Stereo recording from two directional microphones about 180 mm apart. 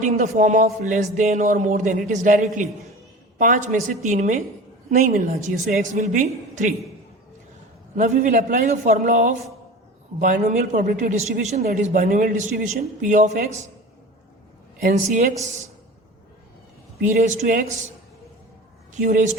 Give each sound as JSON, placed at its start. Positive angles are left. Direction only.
{"t": 0.0, "sound": "a man's voice", "side_deg": -45}
{"t": 7.9, "sound": "a man's voice", "side_deg": -45}
{"t": 14.8, "sound": "a man's voice", "side_deg": -40}
{"t": 17.1, "sound": "a man's voice", "side_deg": -45}
{"t": 18.9, "sound": "a man's voice", "side_deg": -45}